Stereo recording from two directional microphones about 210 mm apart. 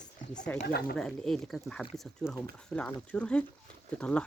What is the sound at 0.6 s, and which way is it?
Speech, 50° left (ahead or behind).